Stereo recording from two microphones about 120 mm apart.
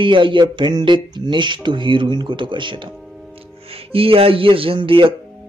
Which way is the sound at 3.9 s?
50° right (ahead or behind).